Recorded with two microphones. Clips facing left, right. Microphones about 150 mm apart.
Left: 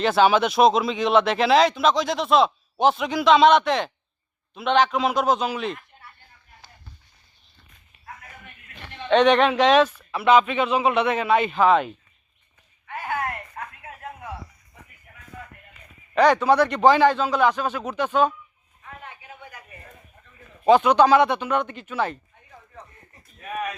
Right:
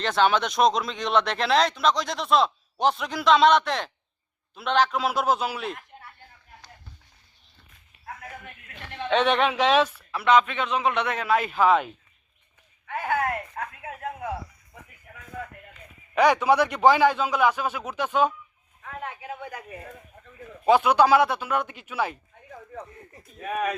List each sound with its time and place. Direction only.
0.0 s speech: 5° left (ahead or behind)
9.0 s speech: 5° right (ahead or behind)
10.1 s speech: 5° left (ahead or behind)
13.6 s a sound: 90° right
16.1 s a man's voice: 10° right (ahead or behind)
18.8 s a sound: 75° right (ahead or behind)
20.7 s a man's voice: 10° right (ahead or behind)